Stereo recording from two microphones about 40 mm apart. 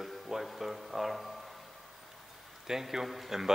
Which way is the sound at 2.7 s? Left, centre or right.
Centre.